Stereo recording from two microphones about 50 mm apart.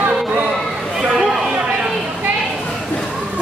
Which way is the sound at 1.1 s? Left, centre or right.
Centre.